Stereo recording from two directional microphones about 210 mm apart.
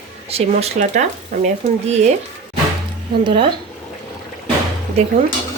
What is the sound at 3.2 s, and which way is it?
Speech, 25° right (ahead or behind).